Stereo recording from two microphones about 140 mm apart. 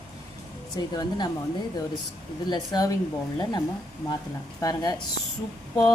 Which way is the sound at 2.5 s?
30° left (ahead or behind).